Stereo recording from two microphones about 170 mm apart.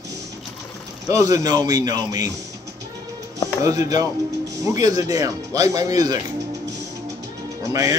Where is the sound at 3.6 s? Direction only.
20° right (ahead or behind).